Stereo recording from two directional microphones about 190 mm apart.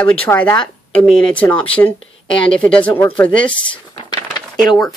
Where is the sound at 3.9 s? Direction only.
25° left (ahead or behind).